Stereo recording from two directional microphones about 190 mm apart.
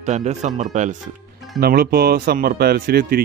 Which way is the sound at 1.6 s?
55° right (ahead or behind).